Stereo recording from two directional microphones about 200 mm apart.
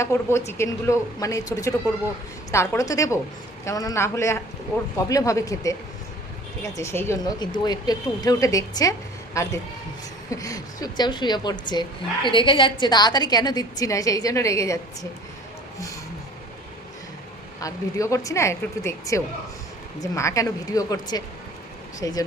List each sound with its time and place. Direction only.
0.0 s a woman's voice: 15° left (ahead or behind)
17.6 s speech: 15° left (ahead or behind)